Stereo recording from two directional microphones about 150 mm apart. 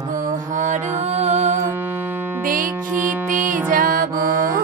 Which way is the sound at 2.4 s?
65° right (ahead or behind).